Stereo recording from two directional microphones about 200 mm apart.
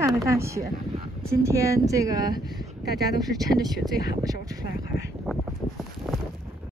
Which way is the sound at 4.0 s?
20° right (ahead or behind).